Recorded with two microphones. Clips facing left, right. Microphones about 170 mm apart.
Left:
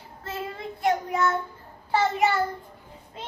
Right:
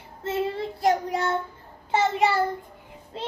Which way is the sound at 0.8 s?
35° right (ahead or behind).